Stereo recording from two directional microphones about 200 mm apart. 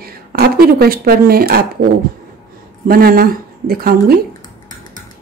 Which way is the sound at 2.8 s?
45° right (ahead or behind).